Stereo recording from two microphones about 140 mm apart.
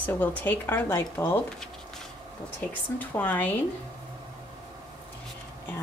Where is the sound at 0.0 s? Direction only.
15° left (ahead or behind).